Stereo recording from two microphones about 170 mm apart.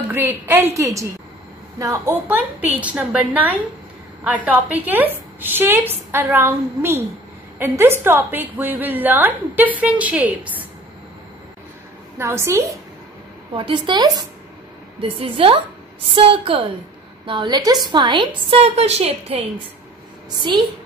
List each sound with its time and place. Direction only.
0.1 s a woman's voice: 15° right (ahead or behind)
12.2 s a woman's voice: 15° right (ahead or behind)
13.6 s a woman's voice: 30° right (ahead or behind)